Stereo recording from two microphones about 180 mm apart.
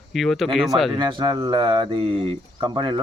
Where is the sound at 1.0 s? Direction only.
25° right (ahead or behind).